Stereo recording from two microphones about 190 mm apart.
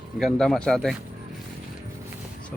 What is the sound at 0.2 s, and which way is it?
Speech, centre (ahead or behind).